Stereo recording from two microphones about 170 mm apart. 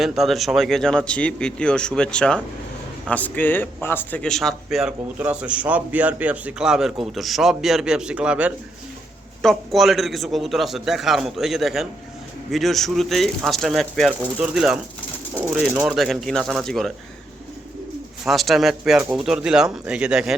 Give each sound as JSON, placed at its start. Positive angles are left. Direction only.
{"t": 0.0, "sound": "a man's voice", "side_deg": 0}
{"t": 15.9, "sound": "a man's voice", "side_deg": 0}
{"t": 18.3, "sound": "a man's voice", "side_deg": 0}